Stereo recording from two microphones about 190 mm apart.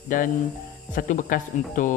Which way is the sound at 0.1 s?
45° left (ahead or behind).